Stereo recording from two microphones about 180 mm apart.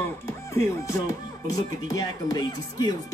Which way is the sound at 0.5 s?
15° left (ahead or behind).